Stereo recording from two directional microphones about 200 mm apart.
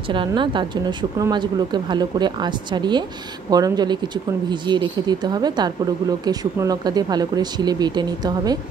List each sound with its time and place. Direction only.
0.1 s speech: 25° right (ahead or behind)